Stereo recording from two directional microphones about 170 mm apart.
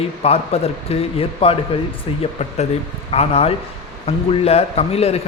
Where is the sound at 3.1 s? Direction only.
35° left (ahead or behind).